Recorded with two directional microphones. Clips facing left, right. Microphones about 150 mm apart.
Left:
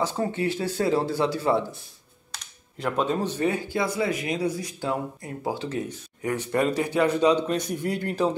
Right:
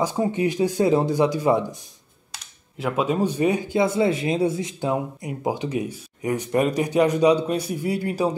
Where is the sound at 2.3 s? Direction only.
5° right (ahead or behind).